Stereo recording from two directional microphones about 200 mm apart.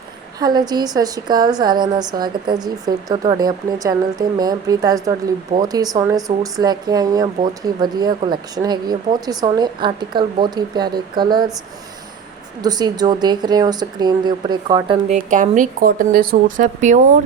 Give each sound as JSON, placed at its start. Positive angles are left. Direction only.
{"t": 0.3, "sound": "a woman's voice", "side_deg": -20}
{"t": 12.6, "sound": "a woman's voice", "side_deg": -20}
{"t": 15.1, "sound": "speech", "side_deg": -40}